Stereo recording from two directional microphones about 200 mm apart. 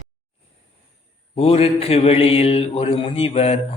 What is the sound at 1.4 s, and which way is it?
Mantra, 30° left (ahead or behind).